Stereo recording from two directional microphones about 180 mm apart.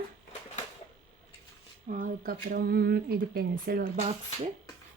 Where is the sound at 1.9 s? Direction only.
50° right (ahead or behind).